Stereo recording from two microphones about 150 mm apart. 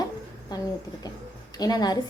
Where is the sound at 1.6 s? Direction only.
25° left (ahead or behind).